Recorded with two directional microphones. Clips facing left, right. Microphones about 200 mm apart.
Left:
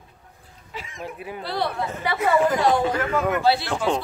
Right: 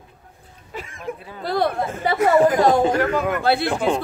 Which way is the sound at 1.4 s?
45° right (ahead or behind).